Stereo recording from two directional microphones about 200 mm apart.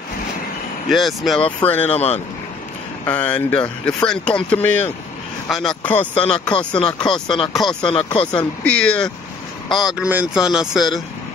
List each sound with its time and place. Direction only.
0.8 s speech: centre (ahead or behind)
2.0 s speech: 30° left (ahead or behind)
3.1 s speech: 5° left (ahead or behind)
6.1 s speech: 25° left (ahead or behind)
8.6 s speech: 5° left (ahead or behind)